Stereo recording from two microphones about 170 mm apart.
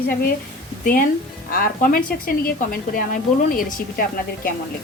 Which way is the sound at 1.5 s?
55° left (ahead or behind).